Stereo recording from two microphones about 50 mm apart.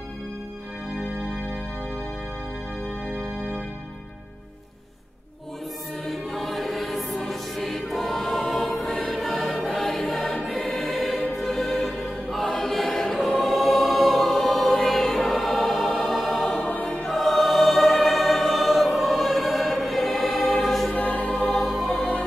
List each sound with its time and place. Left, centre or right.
6.0 s choir: centre
9.2 s music: centre
9.9 s choir: centre
11.3 s music: centre
11.8 s choir: centre
16.1 s music: centre
16.6 s choir: left
17.1 s choir: centre
20.6 s music: centre
20.9 s music: left
21.5 s music: centre
21.9 s music: left